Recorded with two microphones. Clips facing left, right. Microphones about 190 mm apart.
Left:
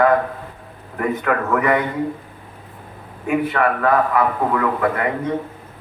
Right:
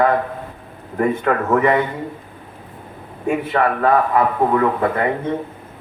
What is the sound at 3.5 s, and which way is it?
A man's voice, 30° right (ahead or behind).